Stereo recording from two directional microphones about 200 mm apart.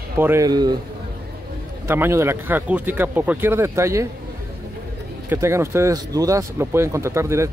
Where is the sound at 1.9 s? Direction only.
10° right (ahead or behind).